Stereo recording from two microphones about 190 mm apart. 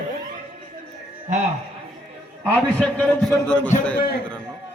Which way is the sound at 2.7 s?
5° left (ahead or behind).